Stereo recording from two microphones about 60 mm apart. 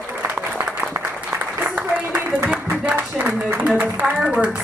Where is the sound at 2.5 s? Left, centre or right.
Right.